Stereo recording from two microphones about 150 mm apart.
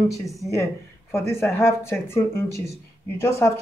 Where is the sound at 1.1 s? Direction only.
15° left (ahead or behind).